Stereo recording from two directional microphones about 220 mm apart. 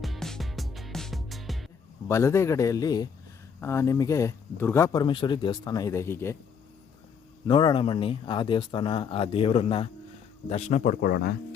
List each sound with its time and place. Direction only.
0.0 s music: centre (ahead or behind)
2.0 s speech: 10° left (ahead or behind)
7.4 s speech: 20° left (ahead or behind); by 11.3 s 45° left (ahead or behind)